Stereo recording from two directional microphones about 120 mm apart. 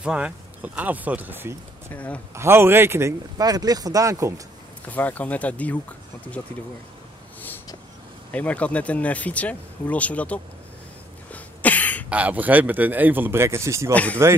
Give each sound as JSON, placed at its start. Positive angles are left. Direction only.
{"t": 0.0, "sound": "speech", "side_deg": -10}
{"t": 2.0, "sound": "speech", "side_deg": 10}
{"t": 2.3, "sound": "speech", "side_deg": -20}
{"t": 4.8, "sound": "speech", "side_deg": 15}
{"t": 8.3, "sound": "speech", "side_deg": 10}
{"t": 11.3, "sound": "a sound", "side_deg": 15}
{"t": 12.1, "sound": "speech", "side_deg": -10}